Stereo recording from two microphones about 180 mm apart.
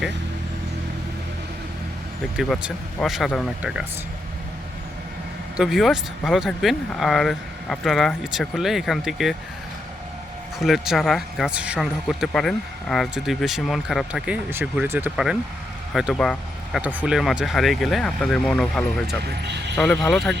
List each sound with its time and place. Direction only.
2.3 s speech: centre (ahead or behind)
5.5 s speech: centre (ahead or behind)
10.6 s speech: centre (ahead or behind)
16.8 s speech: 10° right (ahead or behind)
19.2 s speech: 70° right (ahead or behind)
19.7 s speech: 5° left (ahead or behind)